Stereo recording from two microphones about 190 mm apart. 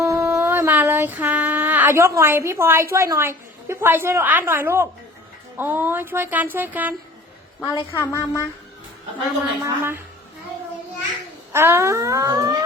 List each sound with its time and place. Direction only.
0.0 s a sound: 15° right (ahead or behind)
2.9 s a woman's voice: 15° right (ahead or behind)
7.9 s a woman's voice: 15° left (ahead or behind)
9.6 s a woman's voice: 15° right (ahead or behind)
11.5 s a woman's voice: 15° right (ahead or behind)